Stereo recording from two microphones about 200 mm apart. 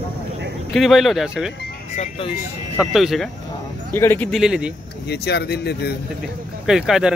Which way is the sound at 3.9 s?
10° left (ahead or behind).